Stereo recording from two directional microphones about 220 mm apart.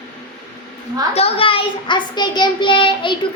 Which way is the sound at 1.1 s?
25° left (ahead or behind).